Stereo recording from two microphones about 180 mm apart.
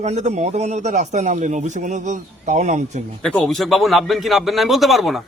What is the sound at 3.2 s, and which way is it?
A man's voice, 5° left (ahead or behind).